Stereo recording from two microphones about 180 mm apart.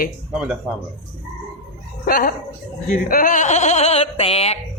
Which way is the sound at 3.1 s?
50° left (ahead or behind).